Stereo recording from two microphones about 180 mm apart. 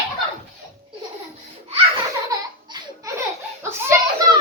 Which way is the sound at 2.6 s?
25° right (ahead or behind).